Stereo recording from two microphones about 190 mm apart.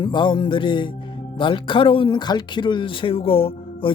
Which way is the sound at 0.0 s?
25° left (ahead or behind).